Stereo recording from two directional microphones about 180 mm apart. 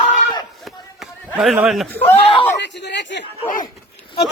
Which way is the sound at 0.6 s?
Centre (ahead or behind).